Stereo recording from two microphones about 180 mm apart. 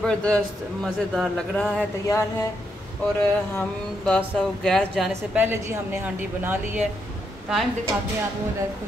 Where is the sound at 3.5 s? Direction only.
10° left (ahead or behind).